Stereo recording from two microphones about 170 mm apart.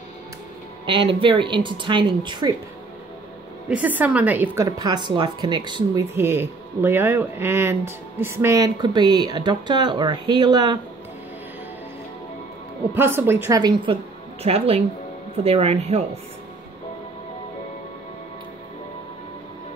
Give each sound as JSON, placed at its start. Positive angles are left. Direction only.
{"t": 0.8, "sound": "speech", "side_deg": -30}
{"t": 3.6, "sound": "speech", "side_deg": -10}
{"t": 6.1, "sound": "speech", "side_deg": -15}
{"t": 12.9, "sound": "a woman's voice", "side_deg": -10}
{"t": 14.4, "sound": "speech", "side_deg": -35}